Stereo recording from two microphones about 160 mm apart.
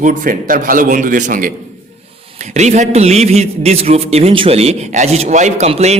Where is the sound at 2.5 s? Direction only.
45° right (ahead or behind).